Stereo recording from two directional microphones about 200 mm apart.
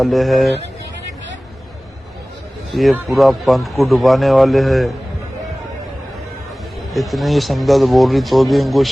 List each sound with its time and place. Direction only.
0.0 s a man's voice: centre (ahead or behind)
2.7 s a man's voice: centre (ahead or behind)
6.9 s a man's voice: centre (ahead or behind)